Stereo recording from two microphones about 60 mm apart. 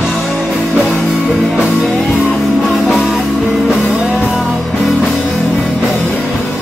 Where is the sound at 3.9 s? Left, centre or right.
Centre.